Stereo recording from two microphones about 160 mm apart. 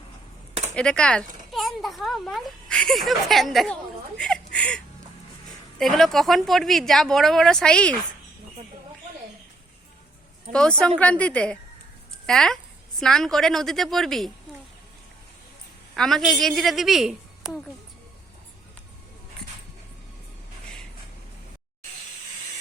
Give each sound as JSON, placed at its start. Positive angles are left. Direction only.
{"t": 0.5, "sound": "a sound", "side_deg": -45}
{"t": 0.8, "sound": "a child's voice", "side_deg": 5}
{"t": 5.8, "sound": "a child's voice", "side_deg": 0}
{"t": 10.5, "sound": "a woman's voice", "side_deg": 5}
{"t": 16.0, "sound": "a child's voice", "side_deg": 5}